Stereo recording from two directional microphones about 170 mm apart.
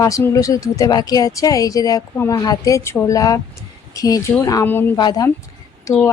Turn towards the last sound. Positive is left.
turn(degrees=15)  # may be behind; listen again after turning